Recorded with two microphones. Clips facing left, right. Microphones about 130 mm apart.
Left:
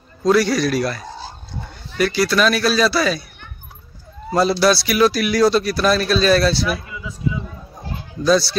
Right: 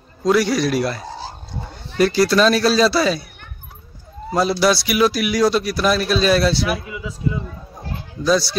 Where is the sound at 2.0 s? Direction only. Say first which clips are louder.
Right 2 dB; 35° right (ahead or behind).